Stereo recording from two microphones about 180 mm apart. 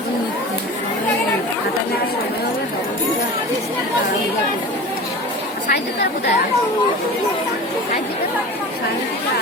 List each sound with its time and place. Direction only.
5.7 s a woman's voice: 70° left (ahead or behind)